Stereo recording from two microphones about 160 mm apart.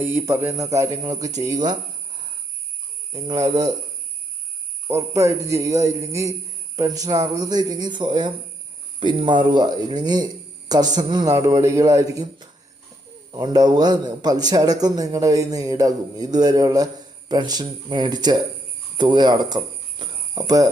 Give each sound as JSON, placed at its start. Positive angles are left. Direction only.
{"t": 0.0, "sound": "a man's voice", "side_deg": -15}
{"t": 3.1, "sound": "a man's voice", "side_deg": -25}
{"t": 4.9, "sound": "a man's voice", "side_deg": -20}